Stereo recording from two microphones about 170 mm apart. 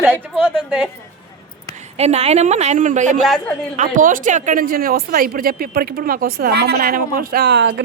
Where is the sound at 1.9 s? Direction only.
40° right (ahead or behind).